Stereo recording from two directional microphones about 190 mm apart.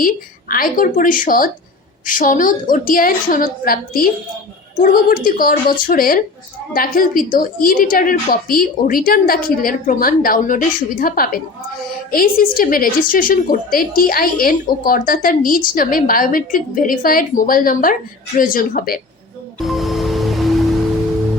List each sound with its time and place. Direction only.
0.0 s a woman's voice: 50° left (ahead or behind)
19.5 s music: centre (ahead or behind)